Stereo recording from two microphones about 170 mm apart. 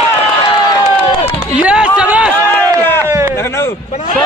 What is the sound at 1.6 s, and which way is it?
Speech, 5° right (ahead or behind).